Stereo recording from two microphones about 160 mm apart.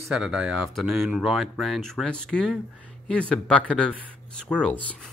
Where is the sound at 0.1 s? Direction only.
5° right (ahead or behind).